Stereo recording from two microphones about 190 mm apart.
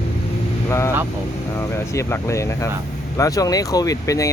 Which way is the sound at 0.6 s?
15° left (ahead or behind).